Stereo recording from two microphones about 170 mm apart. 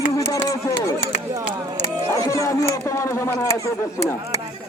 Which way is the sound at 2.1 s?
20° left (ahead or behind).